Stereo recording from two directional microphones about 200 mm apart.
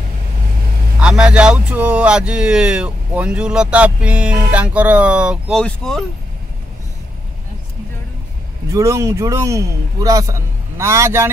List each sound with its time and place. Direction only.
1.0 s speech: 5° right (ahead or behind)
8.7 s a man's voice: 15° right (ahead or behind)